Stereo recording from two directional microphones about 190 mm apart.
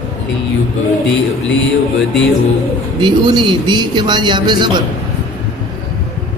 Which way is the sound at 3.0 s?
25° right (ahead or behind).